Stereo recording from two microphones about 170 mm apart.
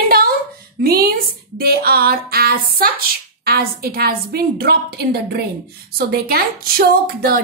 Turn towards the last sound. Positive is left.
turn(degrees=-60)  # may be behind; listen again after turning